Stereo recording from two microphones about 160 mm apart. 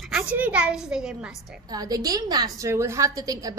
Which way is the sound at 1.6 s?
25° right (ahead or behind).